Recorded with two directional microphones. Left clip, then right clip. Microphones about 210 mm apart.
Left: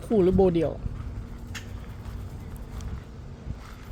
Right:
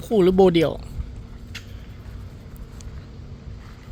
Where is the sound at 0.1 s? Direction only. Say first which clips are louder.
Right 5 dB; 15° right (ahead or behind).